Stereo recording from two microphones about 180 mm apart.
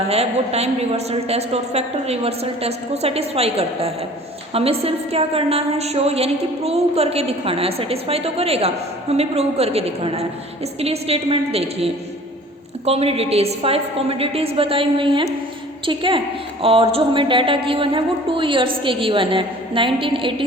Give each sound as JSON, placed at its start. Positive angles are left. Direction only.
{"t": 0.1, "sound": "a woman's voice", "side_deg": -35}